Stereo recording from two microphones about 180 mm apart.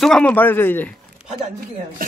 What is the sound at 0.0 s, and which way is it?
Speech, 5° left (ahead or behind).